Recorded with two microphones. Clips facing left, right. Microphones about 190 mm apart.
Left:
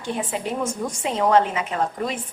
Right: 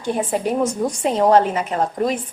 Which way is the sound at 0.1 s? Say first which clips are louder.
Right 6 dB; 40° right (ahead or behind).